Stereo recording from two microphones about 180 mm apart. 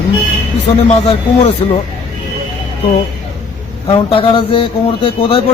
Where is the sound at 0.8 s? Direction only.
35° left (ahead or behind).